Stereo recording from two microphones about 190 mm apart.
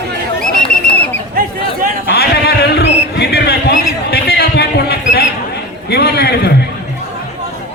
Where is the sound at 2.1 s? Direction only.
60° left (ahead or behind).